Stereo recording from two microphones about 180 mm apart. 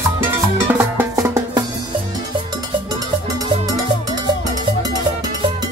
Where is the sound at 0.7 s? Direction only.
10° right (ahead or behind).